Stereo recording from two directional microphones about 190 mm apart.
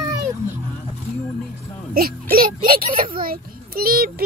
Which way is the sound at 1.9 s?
50° right (ahead or behind).